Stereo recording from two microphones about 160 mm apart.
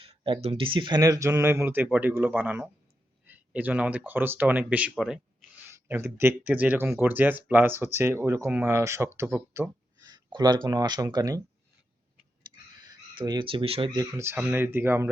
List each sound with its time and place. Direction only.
0.0 s speech: 35° right (ahead or behind); by 5.2 s centre (ahead or behind)
5.7 s speech: 15° right (ahead or behind)
12.8 s speech: 25° right (ahead or behind)
13.9 s speech: 20° right (ahead or behind)